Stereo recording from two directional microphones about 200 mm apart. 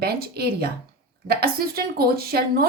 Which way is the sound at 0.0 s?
50° right (ahead or behind).